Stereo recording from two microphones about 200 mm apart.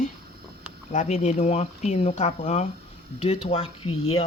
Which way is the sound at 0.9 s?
35° left (ahead or behind).